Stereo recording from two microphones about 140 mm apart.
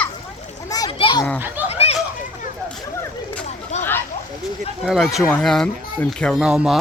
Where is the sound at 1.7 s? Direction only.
45° left (ahead or behind).